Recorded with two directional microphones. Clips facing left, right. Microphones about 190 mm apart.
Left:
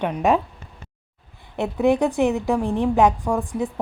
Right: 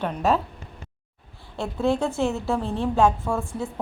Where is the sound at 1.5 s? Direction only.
20° left (ahead or behind).